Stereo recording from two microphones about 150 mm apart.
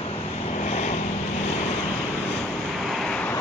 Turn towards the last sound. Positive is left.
turn(degrees=5)  # may be behind; listen again after turning